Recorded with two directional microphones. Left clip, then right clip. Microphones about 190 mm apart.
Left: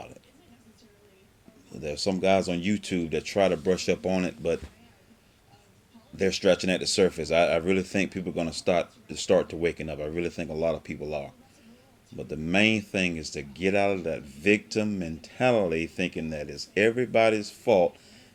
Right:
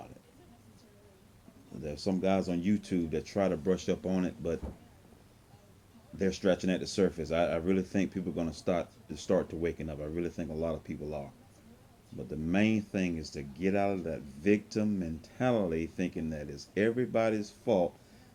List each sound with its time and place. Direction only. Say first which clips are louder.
1.7 s speech: left 6 dB; 35° left (ahead or behind)
6.1 s speech: left 7 dB; 35° left (ahead or behind)